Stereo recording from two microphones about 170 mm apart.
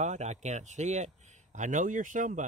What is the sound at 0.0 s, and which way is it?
Speech, 45° right (ahead or behind).